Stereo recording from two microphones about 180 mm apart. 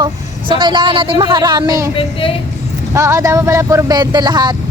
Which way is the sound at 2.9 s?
15° right (ahead or behind).